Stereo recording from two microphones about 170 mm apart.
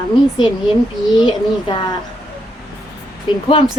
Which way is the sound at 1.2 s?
30° left (ahead or behind).